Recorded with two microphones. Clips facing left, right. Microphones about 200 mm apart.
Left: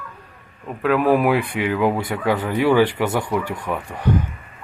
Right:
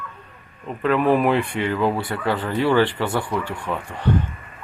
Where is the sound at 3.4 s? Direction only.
40° left (ahead or behind).